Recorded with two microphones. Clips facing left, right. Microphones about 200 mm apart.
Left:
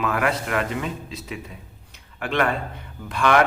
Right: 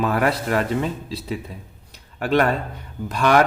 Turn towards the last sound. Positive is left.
turn(degrees=-40)  # may be behind; listen again after turning